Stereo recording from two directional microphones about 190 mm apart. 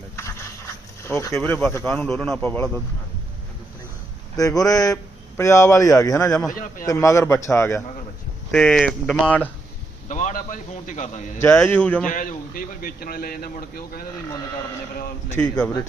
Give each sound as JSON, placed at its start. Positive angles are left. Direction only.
{"t": 0.2, "sound": "a sound", "side_deg": 15}
{"t": 1.0, "sound": "speech", "side_deg": 15}
{"t": 1.4, "sound": "a man's voice", "side_deg": 0}
{"t": 4.4, "sound": "speech", "side_deg": 20}
{"t": 6.5, "sound": "a man's voice", "side_deg": 45}
{"t": 6.8, "sound": "speech", "side_deg": 15}
{"t": 8.5, "sound": "a man's voice", "side_deg": 5}
{"t": 10.1, "sound": "a man's voice", "side_deg": 40}
{"t": 11.3, "sound": "speech", "side_deg": 15}
{"t": 12.0, "sound": "a man's voice", "side_deg": 45}
{"t": 15.4, "sound": "speech", "side_deg": 5}